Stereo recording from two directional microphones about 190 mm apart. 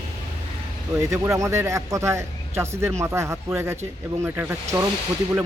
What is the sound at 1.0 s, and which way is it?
Speech, 15° right (ahead or behind).